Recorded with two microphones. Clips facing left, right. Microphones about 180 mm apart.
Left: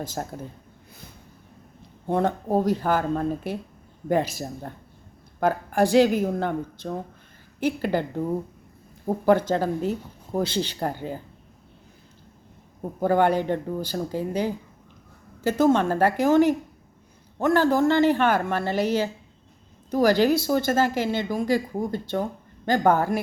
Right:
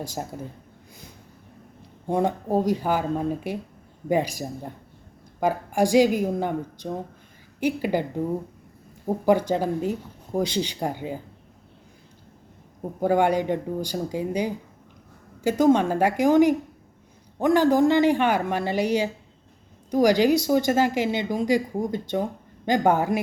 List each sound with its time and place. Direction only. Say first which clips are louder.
0.0 s speech: left 1 dB; 15° right (ahead or behind)
2.0 s speech: even; 15° right (ahead or behind)
9.2 s speech: left 1 dB; 15° right (ahead or behind)
13.0 s speech: even; 10° right (ahead or behind)